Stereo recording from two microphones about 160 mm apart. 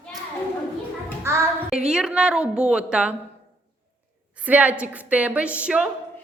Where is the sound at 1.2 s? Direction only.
15° right (ahead or behind).